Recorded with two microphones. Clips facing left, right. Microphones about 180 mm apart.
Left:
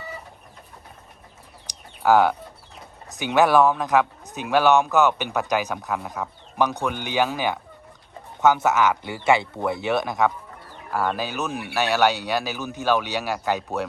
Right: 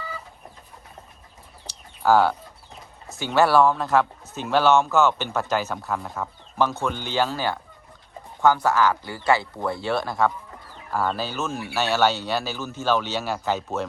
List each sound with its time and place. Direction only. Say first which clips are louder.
1.6 s bird: left 1 dB; 15° left (ahead or behind)
3.2 s speech: left 1 dB; 15° left (ahead or behind)
6.2 s speech: left 1 dB; centre (ahead or behind)
6.6 s speech: even; 15° left (ahead or behind)